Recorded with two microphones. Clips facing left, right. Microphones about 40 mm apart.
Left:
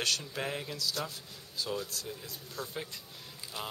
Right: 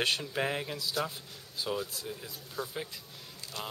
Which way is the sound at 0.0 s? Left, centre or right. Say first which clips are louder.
Right 3 dB; right.